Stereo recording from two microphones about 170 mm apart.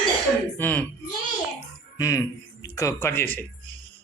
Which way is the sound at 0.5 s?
10° left (ahead or behind).